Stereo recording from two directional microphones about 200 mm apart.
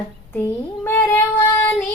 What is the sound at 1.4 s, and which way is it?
Child singing, 10° left (ahead or behind).